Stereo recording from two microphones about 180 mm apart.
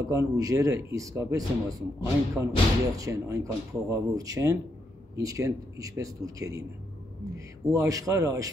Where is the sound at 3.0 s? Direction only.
15° right (ahead or behind).